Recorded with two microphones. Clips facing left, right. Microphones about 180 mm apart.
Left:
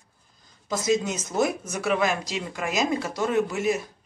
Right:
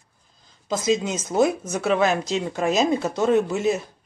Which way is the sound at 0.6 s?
20° right (ahead or behind).